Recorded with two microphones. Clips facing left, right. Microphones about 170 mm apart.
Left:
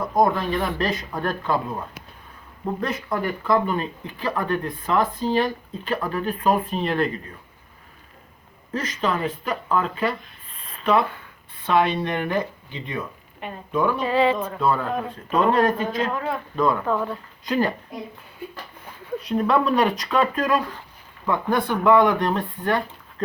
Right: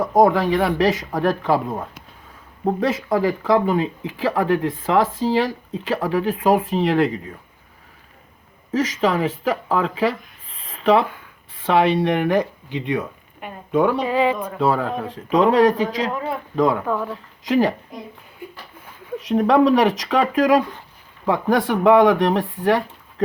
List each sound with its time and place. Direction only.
0.0 s speech: 90° right
8.7 s speech: 90° right
11.0 s a sound: 10° right (ahead or behind)
11.5 s speech: 90° right; by 14.0 s 70° right (ahead or behind)
14.0 s speech: 15° right (ahead or behind)
14.6 s speech: 90° right
16.8 s speech: 5° right (ahead or behind)
17.4 s speech: 90° right
19.2 s speech: 85° right